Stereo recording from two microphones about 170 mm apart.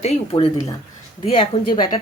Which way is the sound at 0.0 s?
35° left (ahead or behind).